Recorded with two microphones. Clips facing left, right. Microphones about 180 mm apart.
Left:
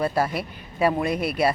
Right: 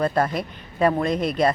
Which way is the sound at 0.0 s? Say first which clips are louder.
Right 2 dB; 5° left (ahead or behind).